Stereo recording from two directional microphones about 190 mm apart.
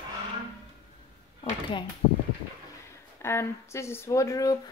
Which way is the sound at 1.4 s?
25° left (ahead or behind).